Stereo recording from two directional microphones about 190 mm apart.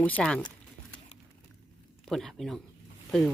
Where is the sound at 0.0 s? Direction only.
5° left (ahead or behind).